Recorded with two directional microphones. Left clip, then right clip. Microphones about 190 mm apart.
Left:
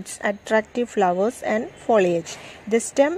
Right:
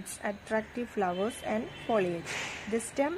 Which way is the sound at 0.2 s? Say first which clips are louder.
Left 11 dB; 40° left (ahead or behind).